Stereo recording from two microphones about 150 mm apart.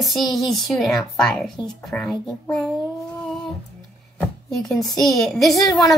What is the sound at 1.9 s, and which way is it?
Speech, 15° left (ahead or behind).